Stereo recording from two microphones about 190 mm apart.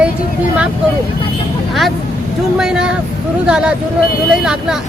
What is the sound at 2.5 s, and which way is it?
Speech, 5° right (ahead or behind).